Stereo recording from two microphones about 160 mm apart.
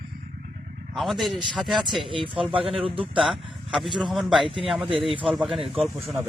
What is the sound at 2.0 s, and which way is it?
Speech, 30° right (ahead or behind).